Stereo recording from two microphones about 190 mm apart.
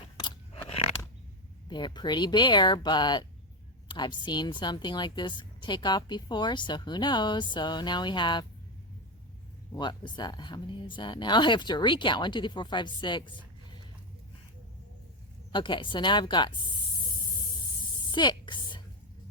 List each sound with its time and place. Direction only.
0.2 s crunch: 25° left (ahead or behind)
1.6 s a woman's voice: 25° left (ahead or behind)
9.7 s a woman's voice: 25° left (ahead or behind)
15.5 s a woman's voice: 25° left (ahead or behind)
18.1 s speech: 25° left (ahead or behind)